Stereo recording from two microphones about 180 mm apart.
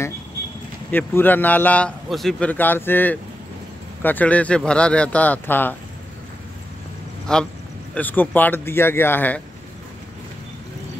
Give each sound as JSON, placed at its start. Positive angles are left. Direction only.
{"t": 0.9, "sound": "a man's voice", "side_deg": 10}
{"t": 7.3, "sound": "a man's voice", "side_deg": 5}